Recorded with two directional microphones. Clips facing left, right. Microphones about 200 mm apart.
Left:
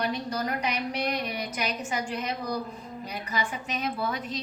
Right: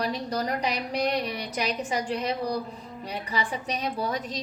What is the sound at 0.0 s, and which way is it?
A woman's voice, 35° right (ahead or behind).